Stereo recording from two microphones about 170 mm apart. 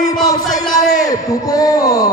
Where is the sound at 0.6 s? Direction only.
20° left (ahead or behind).